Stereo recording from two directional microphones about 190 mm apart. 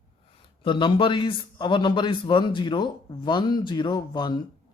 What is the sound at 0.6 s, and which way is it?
Speech, 25° left (ahead or behind).